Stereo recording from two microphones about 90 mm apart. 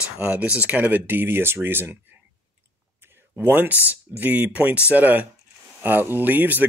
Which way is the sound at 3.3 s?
20° right (ahead or behind).